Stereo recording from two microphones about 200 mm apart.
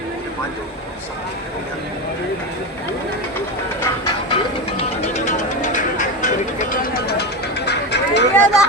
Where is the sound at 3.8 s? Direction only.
20° left (ahead or behind).